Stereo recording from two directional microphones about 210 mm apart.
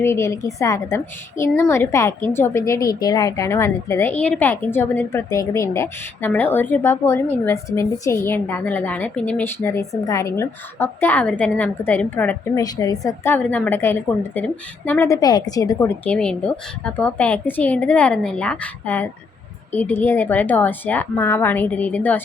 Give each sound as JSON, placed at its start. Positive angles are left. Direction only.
{"t": 0.0, "sound": "a woman's voice", "side_deg": 15}